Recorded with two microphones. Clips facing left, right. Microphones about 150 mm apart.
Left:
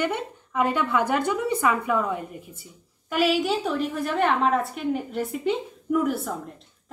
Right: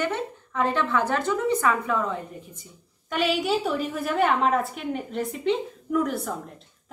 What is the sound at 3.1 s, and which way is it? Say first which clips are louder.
A woman's voice: left 2 dB; centre (ahead or behind).